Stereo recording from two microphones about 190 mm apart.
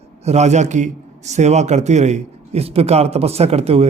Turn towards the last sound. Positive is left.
turn(degrees=-35)  # may be behind; listen again after turning